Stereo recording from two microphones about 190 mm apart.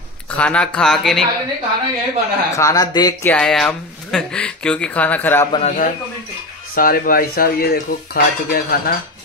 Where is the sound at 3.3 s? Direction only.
5° left (ahead or behind).